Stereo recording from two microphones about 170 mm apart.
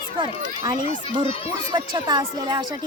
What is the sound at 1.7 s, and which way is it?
Speech, 25° right (ahead or behind).